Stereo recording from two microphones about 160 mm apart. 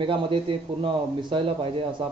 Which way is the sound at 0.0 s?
35° right (ahead or behind).